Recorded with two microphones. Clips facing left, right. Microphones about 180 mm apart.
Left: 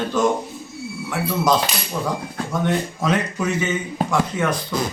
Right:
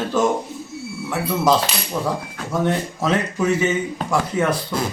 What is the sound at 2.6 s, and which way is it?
Speech, 30° right (ahead or behind).